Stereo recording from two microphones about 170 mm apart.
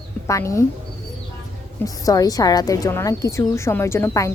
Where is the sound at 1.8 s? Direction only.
20° left (ahead or behind).